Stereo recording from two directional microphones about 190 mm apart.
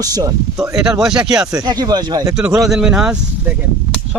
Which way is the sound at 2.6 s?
Centre (ahead or behind).